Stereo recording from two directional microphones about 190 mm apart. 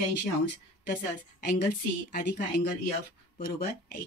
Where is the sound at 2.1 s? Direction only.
45° left (ahead or behind).